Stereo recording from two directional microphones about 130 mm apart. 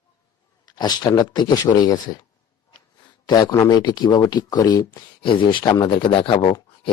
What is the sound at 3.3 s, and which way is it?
Speech, 30° left (ahead or behind).